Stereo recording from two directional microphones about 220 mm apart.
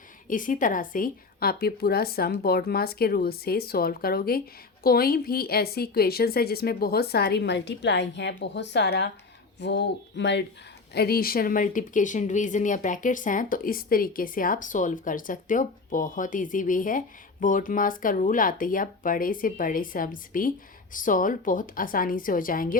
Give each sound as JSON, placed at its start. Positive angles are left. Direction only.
{"t": 0.3, "sound": "a woman's voice", "side_deg": 35}